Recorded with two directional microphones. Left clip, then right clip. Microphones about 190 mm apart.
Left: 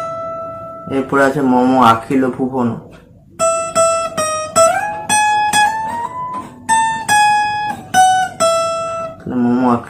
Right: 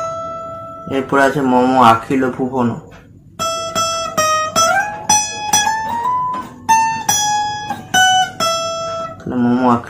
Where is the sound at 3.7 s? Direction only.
35° right (ahead or behind).